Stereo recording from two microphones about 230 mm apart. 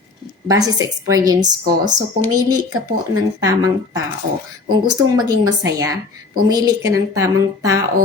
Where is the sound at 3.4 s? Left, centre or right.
Centre.